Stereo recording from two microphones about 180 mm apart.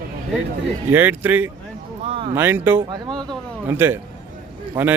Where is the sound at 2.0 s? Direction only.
30° right (ahead or behind).